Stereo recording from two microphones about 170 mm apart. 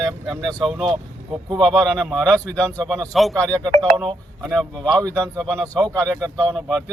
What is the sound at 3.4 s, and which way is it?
Speech, 25° right (ahead or behind).